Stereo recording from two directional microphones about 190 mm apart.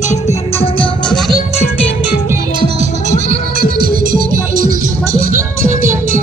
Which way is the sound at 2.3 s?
20° right (ahead or behind).